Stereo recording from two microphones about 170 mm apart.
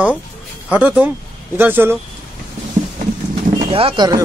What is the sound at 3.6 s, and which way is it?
Speech, 35° right (ahead or behind).